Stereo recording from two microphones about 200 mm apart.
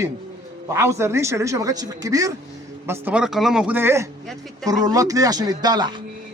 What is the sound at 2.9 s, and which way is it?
A man's voice, 5° right (ahead or behind).